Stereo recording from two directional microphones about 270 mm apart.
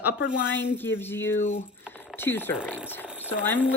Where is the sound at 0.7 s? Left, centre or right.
Centre.